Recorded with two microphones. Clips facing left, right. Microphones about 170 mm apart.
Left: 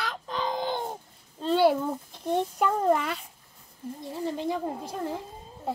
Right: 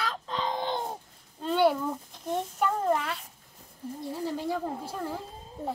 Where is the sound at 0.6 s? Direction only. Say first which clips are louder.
Left 1 dB; centre (ahead or behind).